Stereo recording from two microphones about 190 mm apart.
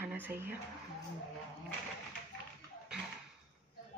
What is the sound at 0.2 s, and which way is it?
Speech, 10° right (ahead or behind).